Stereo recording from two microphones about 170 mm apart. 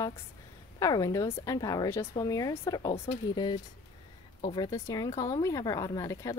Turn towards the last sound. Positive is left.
turn(degrees=20)  # may be behind; listen again after turning